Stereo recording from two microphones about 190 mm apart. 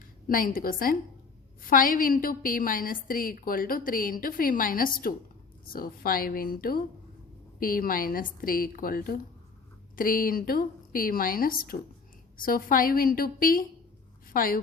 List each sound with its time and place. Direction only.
0.3 s a woman's voice: 45° left (ahead or behind)